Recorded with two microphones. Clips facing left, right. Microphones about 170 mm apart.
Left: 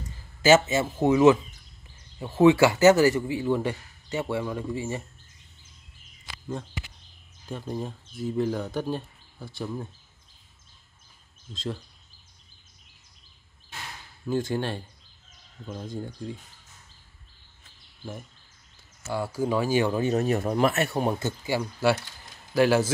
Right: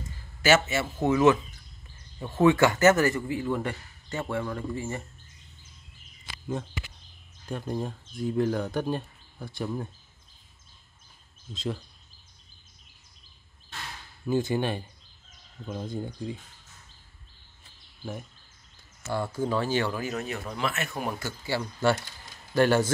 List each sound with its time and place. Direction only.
0.5 s speech: 15° left (ahead or behind)
7.4 s speech: centre (ahead or behind)
11.5 s speech: centre (ahead or behind)
14.2 s speech: 5° right (ahead or behind)
19.0 s speech: 5° left (ahead or behind)
19.9 s speech: 30° left (ahead or behind)
22.5 s speech: 5° left (ahead or behind)